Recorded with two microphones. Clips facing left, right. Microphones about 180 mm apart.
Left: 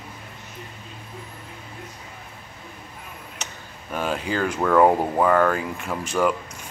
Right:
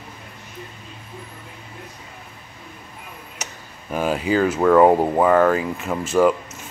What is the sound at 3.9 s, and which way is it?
Speech, 5° right (ahead or behind).